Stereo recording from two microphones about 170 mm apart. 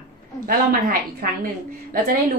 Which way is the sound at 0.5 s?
55° right (ahead or behind).